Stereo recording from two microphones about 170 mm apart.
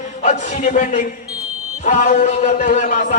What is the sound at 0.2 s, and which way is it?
A man's voice, 45° left (ahead or behind).